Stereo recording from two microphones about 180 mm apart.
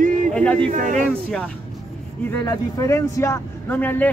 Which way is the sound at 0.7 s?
45° right (ahead or behind).